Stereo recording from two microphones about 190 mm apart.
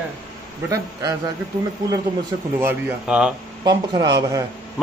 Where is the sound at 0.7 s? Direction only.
20° right (ahead or behind).